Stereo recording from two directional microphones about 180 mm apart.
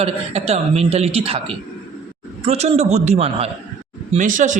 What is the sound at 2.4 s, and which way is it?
A man's voice, 35° right (ahead or behind).